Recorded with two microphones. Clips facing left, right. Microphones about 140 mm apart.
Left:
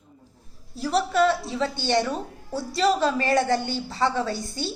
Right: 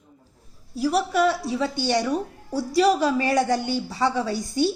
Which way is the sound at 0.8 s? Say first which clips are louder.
Right 1 dB; 10° right (ahead or behind).